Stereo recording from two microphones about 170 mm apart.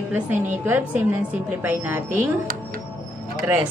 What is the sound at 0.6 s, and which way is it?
A woman's voice, 10° right (ahead or behind).